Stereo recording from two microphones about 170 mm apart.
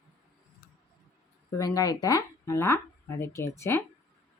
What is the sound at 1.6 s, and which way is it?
Speech, 20° left (ahead or behind).